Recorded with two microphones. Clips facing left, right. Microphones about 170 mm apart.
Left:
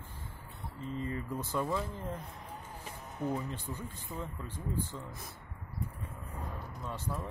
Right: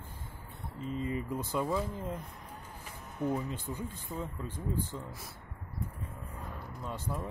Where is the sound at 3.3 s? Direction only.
15° right (ahead or behind).